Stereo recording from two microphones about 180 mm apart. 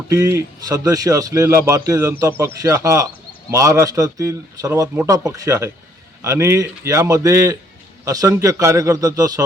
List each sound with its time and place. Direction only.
0.1 s a man's voice: 15° right (ahead or behind)